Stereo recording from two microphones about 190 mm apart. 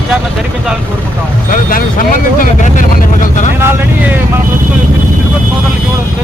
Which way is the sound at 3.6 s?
10° right (ahead or behind).